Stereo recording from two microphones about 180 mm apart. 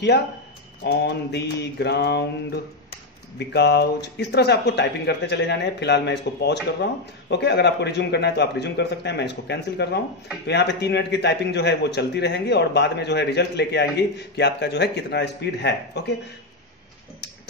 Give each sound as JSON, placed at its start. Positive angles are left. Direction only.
{"t": 0.8, "sound": "mantra", "side_deg": 65}
{"t": 3.3, "sound": "speech", "side_deg": 65}